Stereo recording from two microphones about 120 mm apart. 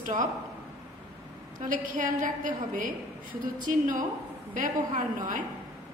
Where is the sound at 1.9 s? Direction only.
90° right.